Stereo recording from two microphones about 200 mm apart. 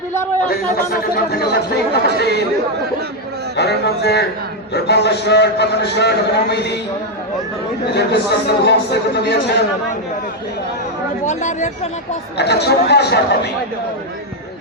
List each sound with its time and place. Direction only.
1.3 s a man's voice: 55° left (ahead or behind)
3.6 s a man's voice: 55° left (ahead or behind)
7.9 s a man's voice: 55° left (ahead or behind)
11.3 s speech: 35° left (ahead or behind)
12.4 s a man's voice: 55° left (ahead or behind)